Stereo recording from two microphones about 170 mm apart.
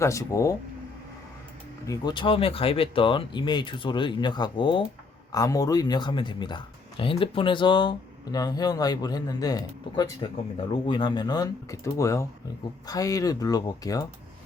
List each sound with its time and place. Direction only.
0.0 s speech: 20° left (ahead or behind)
1.9 s speech: 25° left (ahead or behind)